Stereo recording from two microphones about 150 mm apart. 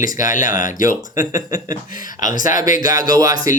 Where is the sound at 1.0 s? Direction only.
25° right (ahead or behind).